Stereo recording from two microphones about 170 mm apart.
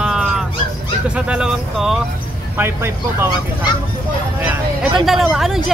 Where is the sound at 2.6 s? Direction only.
15° right (ahead or behind).